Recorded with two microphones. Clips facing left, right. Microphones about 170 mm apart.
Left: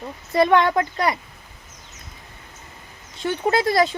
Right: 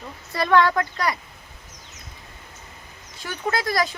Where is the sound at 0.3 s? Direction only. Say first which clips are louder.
Left 2 dB; 20° left (ahead or behind).